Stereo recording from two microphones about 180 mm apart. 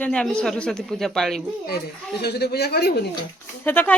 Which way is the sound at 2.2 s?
65° left (ahead or behind).